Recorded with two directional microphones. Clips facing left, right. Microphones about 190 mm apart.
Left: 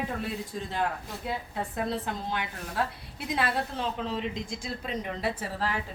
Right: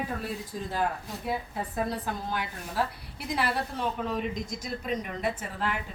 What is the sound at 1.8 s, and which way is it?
Speech, 20° left (ahead or behind).